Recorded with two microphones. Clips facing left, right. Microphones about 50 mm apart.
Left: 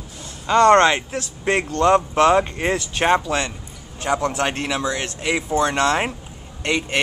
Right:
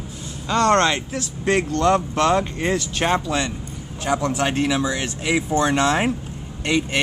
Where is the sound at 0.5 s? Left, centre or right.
Left; by 5.7 s centre.